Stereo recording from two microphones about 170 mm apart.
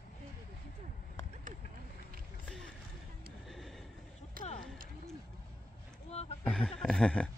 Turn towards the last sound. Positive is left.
turn(degrees=5)  # may be behind; listen again after turning